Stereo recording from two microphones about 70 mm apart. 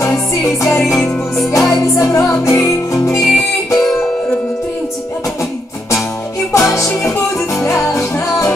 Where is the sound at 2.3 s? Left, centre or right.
Left.